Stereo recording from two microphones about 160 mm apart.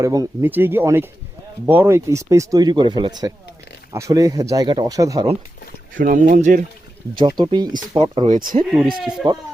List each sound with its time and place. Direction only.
0.0 s speech: 25° right (ahead or behind)
0.4 s speech: 15° right (ahead or behind)
5.9 s speech: 55° right (ahead or behind)
7.2 s speech: 30° right (ahead or behind)
9.0 s speech: 5° right (ahead or behind)